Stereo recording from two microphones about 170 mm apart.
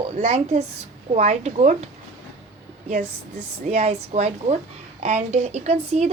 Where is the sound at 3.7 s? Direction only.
40° right (ahead or behind).